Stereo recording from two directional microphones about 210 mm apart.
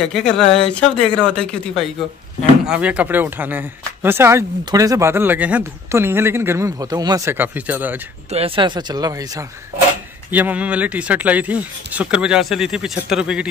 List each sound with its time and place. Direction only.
0.1 s speech: centre (ahead or behind)
8.3 s speech: 25° right (ahead or behind)
10.3 s speech: 5° right (ahead or behind)